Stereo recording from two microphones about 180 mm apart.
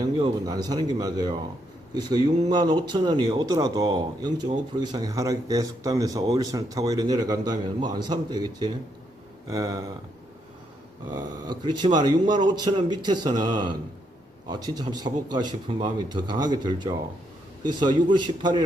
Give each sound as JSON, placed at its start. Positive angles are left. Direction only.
{"t": 0.0, "sound": "speech", "side_deg": -20}
{"t": 11.1, "sound": "speech", "side_deg": -25}